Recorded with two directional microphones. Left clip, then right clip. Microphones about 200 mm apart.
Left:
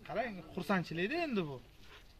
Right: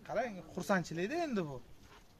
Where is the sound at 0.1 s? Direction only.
10° right (ahead or behind).